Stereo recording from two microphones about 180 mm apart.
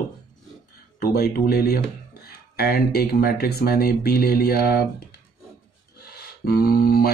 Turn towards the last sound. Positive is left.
turn(degrees=60)  # may be behind; listen again after turning